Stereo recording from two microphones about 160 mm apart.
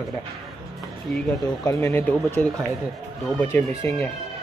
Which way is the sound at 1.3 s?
20° left (ahead or behind).